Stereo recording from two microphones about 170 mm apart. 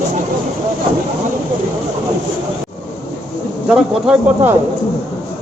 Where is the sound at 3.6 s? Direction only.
5° right (ahead or behind).